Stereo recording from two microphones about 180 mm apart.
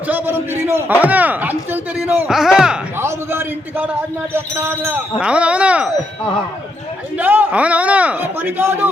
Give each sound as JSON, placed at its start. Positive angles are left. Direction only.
{"t": 0.1, "sound": "a man's voice", "side_deg": -10}
{"t": 7.2, "sound": "speech", "side_deg": -10}